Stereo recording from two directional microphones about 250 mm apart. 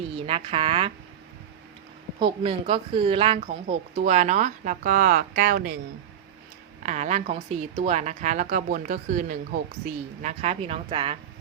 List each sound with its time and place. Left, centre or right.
0.2 s speech: right
2.1 s speech: right
6.8 s speech: right